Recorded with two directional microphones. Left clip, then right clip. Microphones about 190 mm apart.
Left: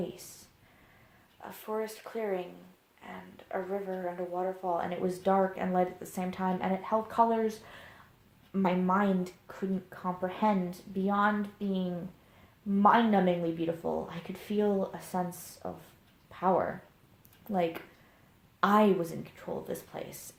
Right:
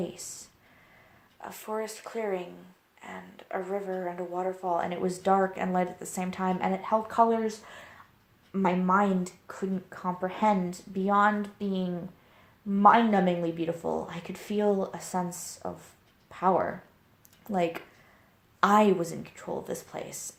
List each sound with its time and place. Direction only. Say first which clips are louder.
1.4 s speech: right 2 dB; 35° right (ahead or behind)